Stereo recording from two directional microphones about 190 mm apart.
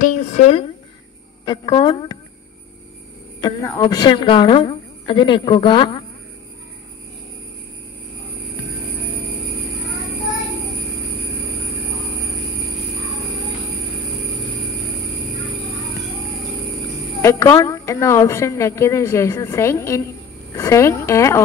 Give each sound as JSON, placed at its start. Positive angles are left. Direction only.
{"t": 0.0, "sound": "speech", "side_deg": 35}
{"t": 1.4, "sound": "a woman's voice", "side_deg": 20}
{"t": 3.3, "sound": "a woman's voice", "side_deg": 15}
{"t": 17.2, "sound": "a woman's voice", "side_deg": 15}